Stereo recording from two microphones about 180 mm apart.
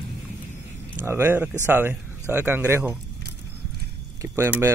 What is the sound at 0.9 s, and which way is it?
Speech, 15° right (ahead or behind).